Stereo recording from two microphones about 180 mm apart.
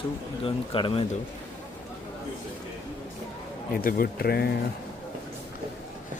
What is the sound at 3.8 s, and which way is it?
Speech, 50° left (ahead or behind).